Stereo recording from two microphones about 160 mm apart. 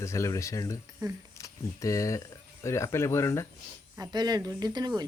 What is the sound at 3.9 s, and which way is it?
Speech, 25° right (ahead or behind).